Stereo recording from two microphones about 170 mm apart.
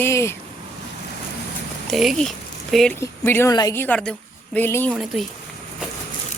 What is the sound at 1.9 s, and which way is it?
Speech, centre (ahead or behind).